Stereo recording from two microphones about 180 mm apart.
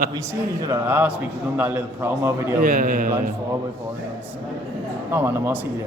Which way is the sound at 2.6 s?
50° right (ahead or behind).